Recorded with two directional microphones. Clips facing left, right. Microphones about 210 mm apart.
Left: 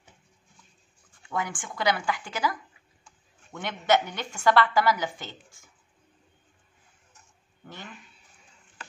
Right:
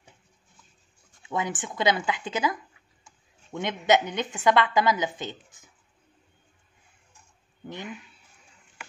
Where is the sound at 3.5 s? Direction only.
20° right (ahead or behind).